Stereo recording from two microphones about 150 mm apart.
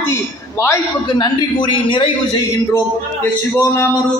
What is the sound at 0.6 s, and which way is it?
A man's voice, 25° left (ahead or behind).